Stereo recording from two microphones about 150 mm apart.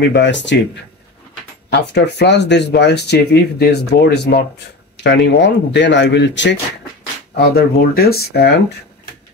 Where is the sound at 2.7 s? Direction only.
90° left.